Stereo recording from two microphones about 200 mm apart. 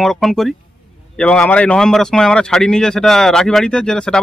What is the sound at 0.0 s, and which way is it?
Speech, centre (ahead or behind).